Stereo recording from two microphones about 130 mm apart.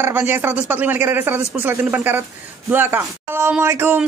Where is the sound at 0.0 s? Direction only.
20° right (ahead or behind).